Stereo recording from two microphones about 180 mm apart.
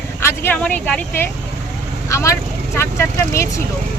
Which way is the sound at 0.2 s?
15° left (ahead or behind).